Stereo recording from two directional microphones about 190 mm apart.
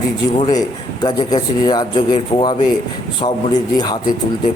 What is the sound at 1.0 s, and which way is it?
A man's voice, 20° left (ahead or behind).